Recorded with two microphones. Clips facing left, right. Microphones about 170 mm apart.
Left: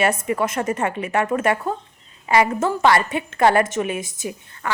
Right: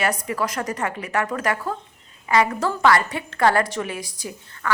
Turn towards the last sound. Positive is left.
turn(degrees=20)  # may be behind; listen again after turning